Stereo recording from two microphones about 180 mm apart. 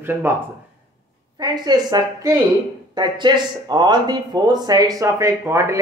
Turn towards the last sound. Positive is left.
turn(degrees=-15)  # may be behind; listen again after turning